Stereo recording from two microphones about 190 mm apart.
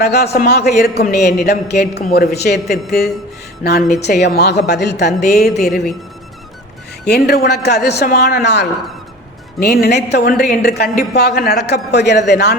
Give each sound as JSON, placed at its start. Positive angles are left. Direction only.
{"t": 0.0, "sound": "a man's voice", "side_deg": 55}
{"t": 5.5, "sound": "speech", "side_deg": 0}
{"t": 7.1, "sound": "a man's voice", "side_deg": 55}